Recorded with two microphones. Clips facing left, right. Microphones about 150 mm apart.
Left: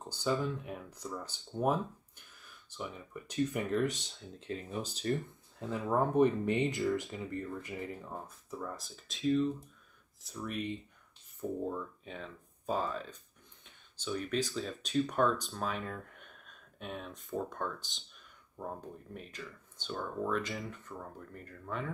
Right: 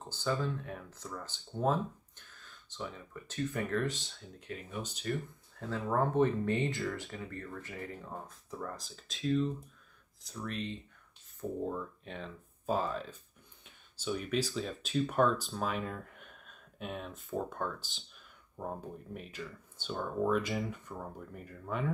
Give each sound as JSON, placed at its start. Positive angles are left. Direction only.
{"t": 0.0, "sound": "speech", "side_deg": 15}
{"t": 5.1, "sound": "speech", "side_deg": 15}
{"t": 8.5, "sound": "speech", "side_deg": 5}
{"t": 11.7, "sound": "speech", "side_deg": 0}
{"t": 19.1, "sound": "speech", "side_deg": -5}